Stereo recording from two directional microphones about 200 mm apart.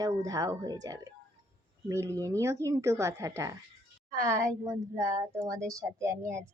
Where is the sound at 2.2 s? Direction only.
15° right (ahead or behind).